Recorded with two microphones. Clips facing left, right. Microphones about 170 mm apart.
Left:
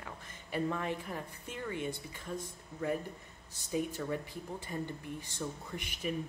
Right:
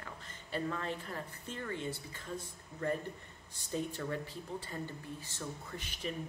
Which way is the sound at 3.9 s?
15° left (ahead or behind).